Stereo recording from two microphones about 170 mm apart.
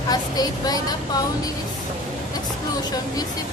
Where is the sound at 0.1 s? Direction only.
20° left (ahead or behind).